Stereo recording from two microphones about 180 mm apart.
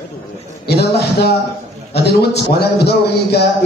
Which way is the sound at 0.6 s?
65° left (ahead or behind).